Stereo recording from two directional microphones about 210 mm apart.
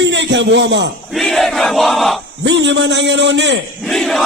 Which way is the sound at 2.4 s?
60° right (ahead or behind).